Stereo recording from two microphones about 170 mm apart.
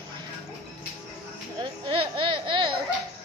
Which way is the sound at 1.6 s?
30° right (ahead or behind).